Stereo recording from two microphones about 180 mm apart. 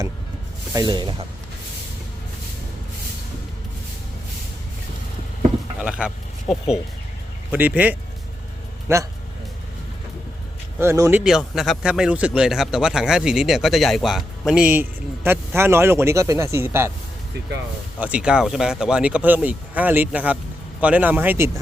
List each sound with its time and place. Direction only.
0.7 s speech: 20° right (ahead or behind)
5.8 s a man's voice: 5° right (ahead or behind)
10.8 s speech: 15° right (ahead or behind)
11.2 s a man's voice: 5° right (ahead or behind)
18.0 s speech: 5° right (ahead or behind)